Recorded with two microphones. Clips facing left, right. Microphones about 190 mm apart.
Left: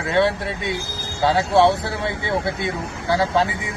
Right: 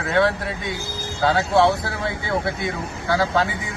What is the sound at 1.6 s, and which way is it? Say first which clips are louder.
Speech: left 2 dB; 25° left (ahead or behind).